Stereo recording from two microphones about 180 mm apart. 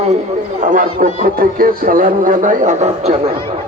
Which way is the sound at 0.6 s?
45° right (ahead or behind).